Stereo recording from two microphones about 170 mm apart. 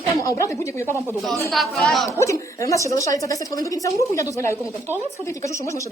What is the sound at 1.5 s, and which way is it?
Speech, centre (ahead or behind).